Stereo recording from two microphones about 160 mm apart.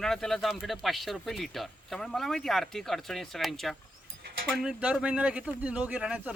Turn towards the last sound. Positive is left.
turn(degrees=-5)  # may be behind; listen again after turning